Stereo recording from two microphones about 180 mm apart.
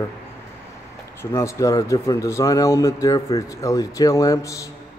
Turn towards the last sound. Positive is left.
turn(degrees=15)  # may be behind; listen again after turning